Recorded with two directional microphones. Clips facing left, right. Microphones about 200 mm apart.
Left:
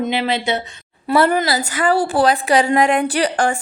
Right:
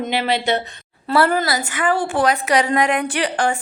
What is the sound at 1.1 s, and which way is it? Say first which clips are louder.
Speech: left 2 dB; 20° left (ahead or behind).